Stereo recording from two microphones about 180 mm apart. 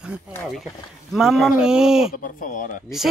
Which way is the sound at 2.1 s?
50° left (ahead or behind).